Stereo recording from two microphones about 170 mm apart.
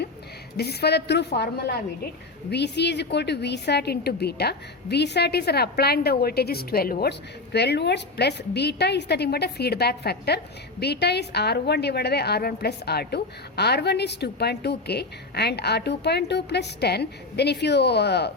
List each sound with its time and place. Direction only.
0.5 s a woman's voice: 70° left (ahead or behind)
2.5 s a woman's voice: 85° left